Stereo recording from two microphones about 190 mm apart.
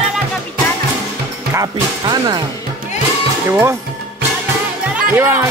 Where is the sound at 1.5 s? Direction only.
20° right (ahead or behind).